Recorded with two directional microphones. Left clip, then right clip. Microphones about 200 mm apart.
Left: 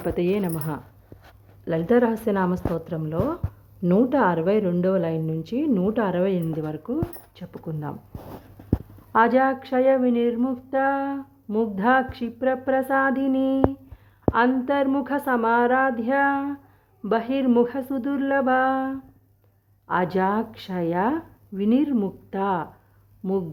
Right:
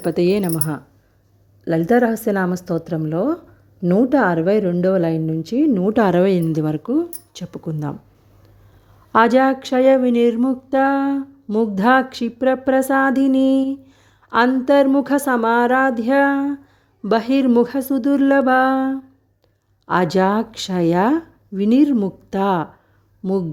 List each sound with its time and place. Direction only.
0.0 s a woman's voice: 35° right (ahead or behind)
5.9 s speech: 40° right (ahead or behind)
9.1 s speech: 35° right (ahead or behind)